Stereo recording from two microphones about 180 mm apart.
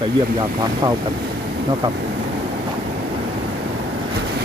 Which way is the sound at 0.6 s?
20° right (ahead or behind).